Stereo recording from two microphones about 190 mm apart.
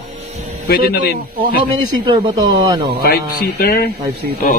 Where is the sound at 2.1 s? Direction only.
20° right (ahead or behind).